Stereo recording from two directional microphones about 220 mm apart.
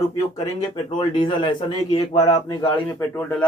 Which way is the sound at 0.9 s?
20° left (ahead or behind).